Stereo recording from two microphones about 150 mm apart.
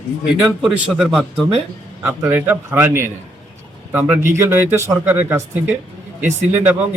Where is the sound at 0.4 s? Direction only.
Centre (ahead or behind).